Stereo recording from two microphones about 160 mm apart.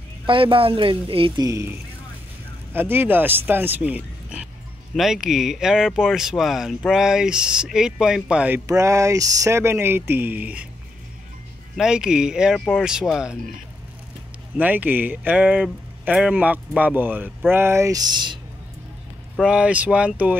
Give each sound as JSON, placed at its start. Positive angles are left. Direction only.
{"t": 0.3, "sound": "speech", "side_deg": -35}
{"t": 11.7, "sound": "speech", "side_deg": -5}
{"t": 14.6, "sound": "speech", "side_deg": -10}
{"t": 19.3, "sound": "speech", "side_deg": -5}